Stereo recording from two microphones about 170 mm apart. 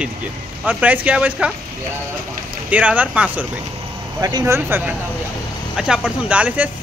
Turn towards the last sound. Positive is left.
turn(degrees=-10)  # may be behind; listen again after turning